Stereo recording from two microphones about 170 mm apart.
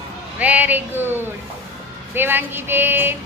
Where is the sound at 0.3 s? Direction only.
10° right (ahead or behind).